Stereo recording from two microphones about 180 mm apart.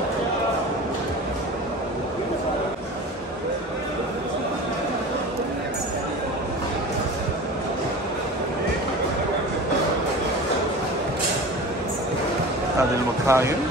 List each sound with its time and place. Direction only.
13.3 s speech: 15° right (ahead or behind)